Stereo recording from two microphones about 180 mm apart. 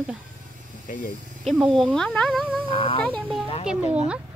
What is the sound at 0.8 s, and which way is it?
Speech, 45° left (ahead or behind).